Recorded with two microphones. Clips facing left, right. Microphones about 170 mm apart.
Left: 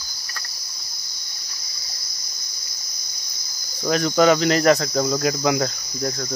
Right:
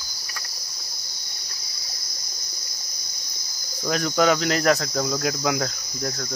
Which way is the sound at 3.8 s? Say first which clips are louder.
Left 4 dB; centre (ahead or behind).